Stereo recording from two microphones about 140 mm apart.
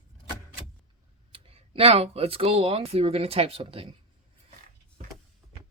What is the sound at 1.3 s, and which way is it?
Speech, 40° right (ahead or behind).